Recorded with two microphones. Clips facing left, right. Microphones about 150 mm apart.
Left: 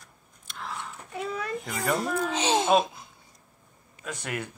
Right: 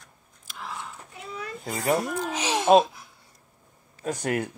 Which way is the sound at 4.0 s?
35° right (ahead or behind).